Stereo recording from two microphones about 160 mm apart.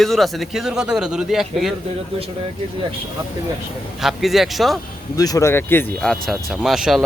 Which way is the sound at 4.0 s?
Centre (ahead or behind).